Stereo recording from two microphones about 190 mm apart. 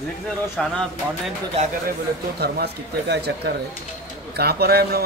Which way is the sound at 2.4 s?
60° right (ahead or behind).